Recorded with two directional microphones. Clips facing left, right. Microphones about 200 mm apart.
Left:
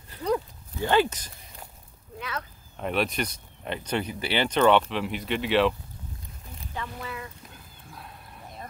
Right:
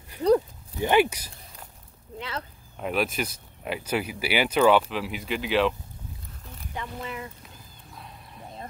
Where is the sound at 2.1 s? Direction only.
25° right (ahead or behind).